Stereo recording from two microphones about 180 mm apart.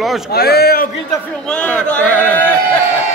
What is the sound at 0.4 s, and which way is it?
Speech, 60° left (ahead or behind).